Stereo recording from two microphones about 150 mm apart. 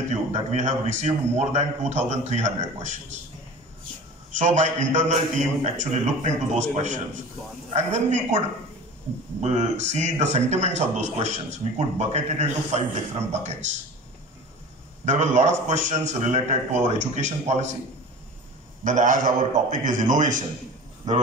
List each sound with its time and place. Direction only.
0.1 s a man's voice: 50° right (ahead or behind)
4.4 s a man's voice: 55° right (ahead or behind)
9.4 s a man's voice: 50° right (ahead or behind)
11.6 s a man's voice: 40° right (ahead or behind)
15.0 s a man's voice: 55° right (ahead or behind)
18.9 s a man's voice: 60° right (ahead or behind)